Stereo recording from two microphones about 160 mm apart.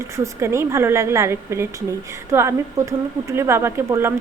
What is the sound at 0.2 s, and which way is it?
Speech, 15° right (ahead or behind).